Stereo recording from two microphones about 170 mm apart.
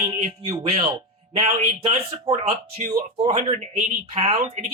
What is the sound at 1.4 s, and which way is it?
Speech, 40° right (ahead or behind).